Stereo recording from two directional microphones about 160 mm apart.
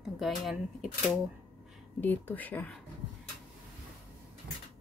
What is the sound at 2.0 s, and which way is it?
Speech, 10° left (ahead or behind).